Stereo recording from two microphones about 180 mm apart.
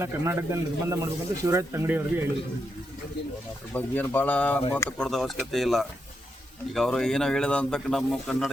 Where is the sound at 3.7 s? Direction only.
10° left (ahead or behind).